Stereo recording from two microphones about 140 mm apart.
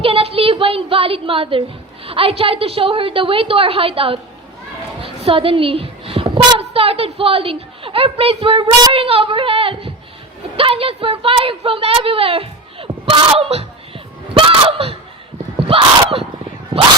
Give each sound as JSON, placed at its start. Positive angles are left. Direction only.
{"t": 0.0, "sound": "a woman's voice", "side_deg": -40}
{"t": 5.0, "sound": "a sound", "side_deg": -40}
{"t": 6.6, "sound": "a woman's voice", "side_deg": -45}